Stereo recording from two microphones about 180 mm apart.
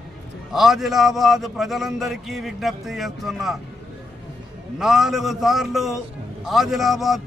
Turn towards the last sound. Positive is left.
turn(degrees=0)  # may be behind; listen again after turning